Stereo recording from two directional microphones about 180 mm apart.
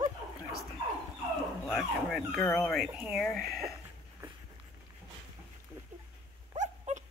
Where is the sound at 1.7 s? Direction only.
Centre (ahead or behind).